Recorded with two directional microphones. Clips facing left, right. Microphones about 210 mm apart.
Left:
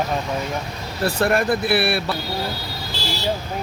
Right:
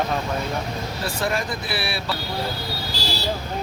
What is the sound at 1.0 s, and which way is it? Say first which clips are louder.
Speech: left 8 dB; 60° left (ahead or behind).